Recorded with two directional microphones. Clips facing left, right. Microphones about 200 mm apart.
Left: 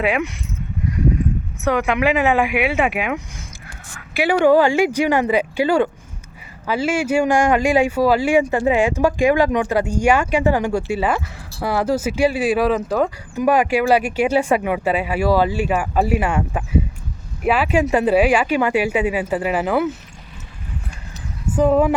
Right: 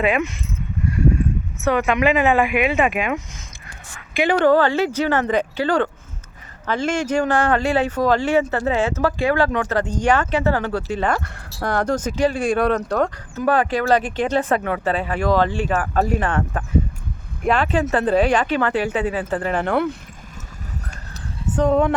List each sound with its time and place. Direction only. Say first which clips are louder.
0.0 s speech: even; 10° left (ahead or behind)
0.9 s a sound: even; 15° left (ahead or behind)
1.6 s speech: even; 10° left (ahead or behind)
21.5 s speech: left 2 dB; 5° left (ahead or behind)